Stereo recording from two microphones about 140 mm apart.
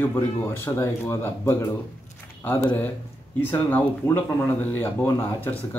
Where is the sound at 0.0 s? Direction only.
15° left (ahead or behind).